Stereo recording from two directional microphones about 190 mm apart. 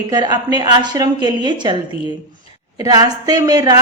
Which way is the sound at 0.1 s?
20° right (ahead or behind).